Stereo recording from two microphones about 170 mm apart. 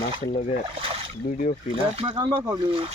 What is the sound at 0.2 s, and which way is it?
Speech, 40° left (ahead or behind).